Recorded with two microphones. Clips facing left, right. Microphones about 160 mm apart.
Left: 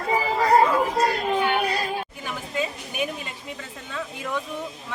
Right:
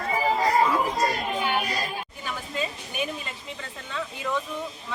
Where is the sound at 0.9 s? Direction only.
60° left (ahead or behind).